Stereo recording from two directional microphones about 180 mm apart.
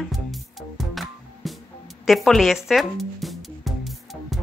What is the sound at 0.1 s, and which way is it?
Music, centre (ahead or behind).